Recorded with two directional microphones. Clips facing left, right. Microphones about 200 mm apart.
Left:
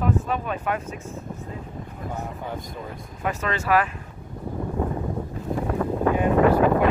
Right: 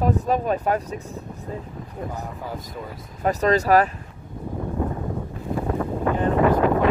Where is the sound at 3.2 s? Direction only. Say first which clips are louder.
Right 8 dB; 40° right (ahead or behind).